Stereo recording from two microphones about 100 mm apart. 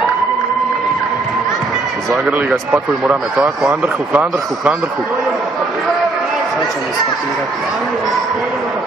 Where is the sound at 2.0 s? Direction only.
Centre (ahead or behind).